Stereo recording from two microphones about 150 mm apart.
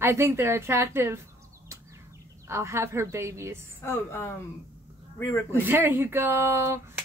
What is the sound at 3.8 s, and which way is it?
Speech, 15° left (ahead or behind).